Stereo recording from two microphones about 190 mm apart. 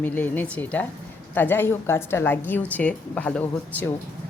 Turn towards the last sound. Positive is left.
turn(degrees=10)  # may be behind; listen again after turning